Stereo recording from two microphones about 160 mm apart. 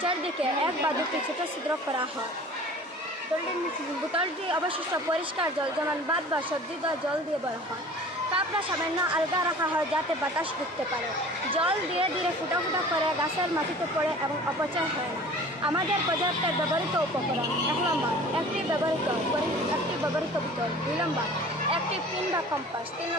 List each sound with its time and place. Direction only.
11.5 s speech: 35° right (ahead or behind)